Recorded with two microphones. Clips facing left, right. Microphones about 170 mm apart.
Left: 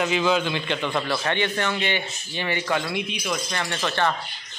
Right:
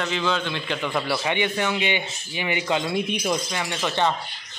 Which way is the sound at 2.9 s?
40° right (ahead or behind).